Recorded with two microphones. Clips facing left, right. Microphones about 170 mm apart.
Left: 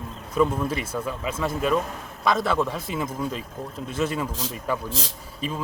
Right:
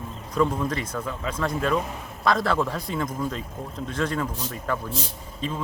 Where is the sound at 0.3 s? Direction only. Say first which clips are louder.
Left 1 dB; 5° left (ahead or behind).